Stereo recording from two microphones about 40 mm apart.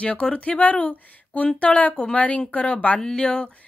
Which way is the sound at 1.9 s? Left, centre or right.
Left.